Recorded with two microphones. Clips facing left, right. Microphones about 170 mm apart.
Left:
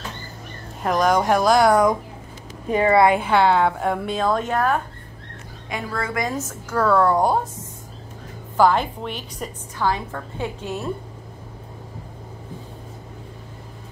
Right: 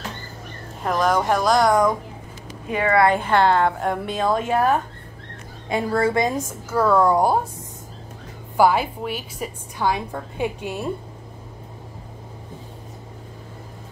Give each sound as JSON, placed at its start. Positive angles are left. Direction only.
{"t": 0.8, "sound": "a woman's voice", "side_deg": 0}
{"t": 3.2, "sound": "a woman's voice", "side_deg": 5}
{"t": 5.7, "sound": "a woman's voice", "side_deg": -30}
{"t": 6.2, "sound": "a woman's voice", "side_deg": -15}
{"t": 8.5, "sound": "a woman's voice", "side_deg": -10}